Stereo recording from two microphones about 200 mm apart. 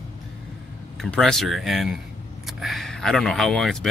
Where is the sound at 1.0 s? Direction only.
Centre (ahead or behind).